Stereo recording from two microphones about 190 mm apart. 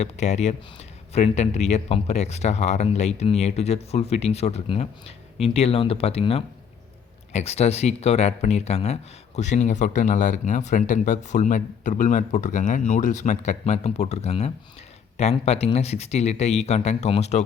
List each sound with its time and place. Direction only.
0.0 s speech: 35° left (ahead or behind)